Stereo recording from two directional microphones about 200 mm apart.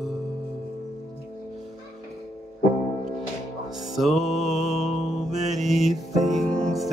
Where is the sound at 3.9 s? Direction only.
Centre (ahead or behind).